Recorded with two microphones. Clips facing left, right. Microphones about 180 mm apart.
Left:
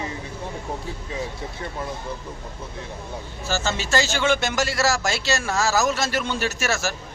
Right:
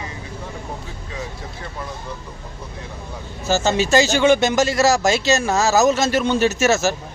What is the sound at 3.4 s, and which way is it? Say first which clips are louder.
Speech: right 8 dB; 20° right (ahead or behind).